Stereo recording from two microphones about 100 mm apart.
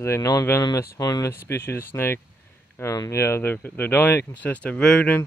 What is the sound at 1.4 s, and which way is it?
Speech, 25° left (ahead or behind).